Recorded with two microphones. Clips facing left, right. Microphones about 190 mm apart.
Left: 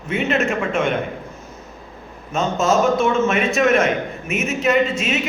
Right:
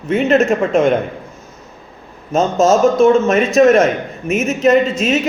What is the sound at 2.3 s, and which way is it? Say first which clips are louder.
A man's voice: right 6 dB; 40° right (ahead or behind).